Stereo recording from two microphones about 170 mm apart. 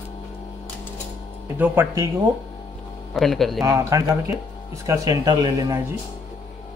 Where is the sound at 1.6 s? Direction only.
10° right (ahead or behind).